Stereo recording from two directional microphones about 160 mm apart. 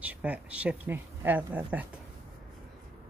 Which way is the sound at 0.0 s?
10° right (ahead or behind).